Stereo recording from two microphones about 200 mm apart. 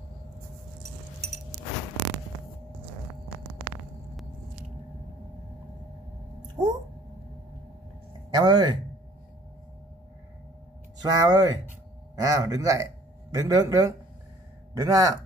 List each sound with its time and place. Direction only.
6.4 s a sound: 20° right (ahead or behind)
8.3 s speech: 20° right (ahead or behind)
11.0 s a man's voice: 20° right (ahead or behind)